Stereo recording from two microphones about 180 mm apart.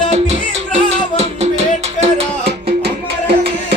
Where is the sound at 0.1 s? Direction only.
35° right (ahead or behind).